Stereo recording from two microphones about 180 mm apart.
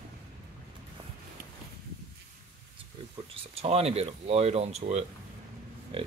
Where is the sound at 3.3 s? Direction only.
35° right (ahead or behind).